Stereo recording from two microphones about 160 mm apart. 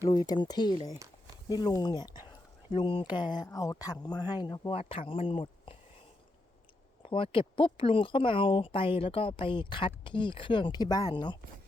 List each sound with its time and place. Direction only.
0.0 s speech: 25° left (ahead or behind)
4.7 s speech: 35° left (ahead or behind)
7.0 s speech: 35° left (ahead or behind)